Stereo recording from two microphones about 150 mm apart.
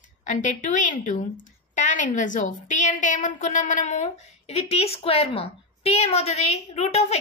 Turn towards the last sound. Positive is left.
turn(degrees=45)  # may be behind; listen again after turning